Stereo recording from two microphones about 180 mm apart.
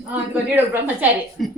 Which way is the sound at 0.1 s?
10° right (ahead or behind).